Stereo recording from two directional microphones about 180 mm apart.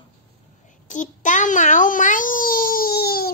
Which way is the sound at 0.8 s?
45° left (ahead or behind).